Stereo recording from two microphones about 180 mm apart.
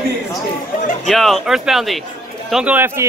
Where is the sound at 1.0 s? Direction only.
Centre (ahead or behind).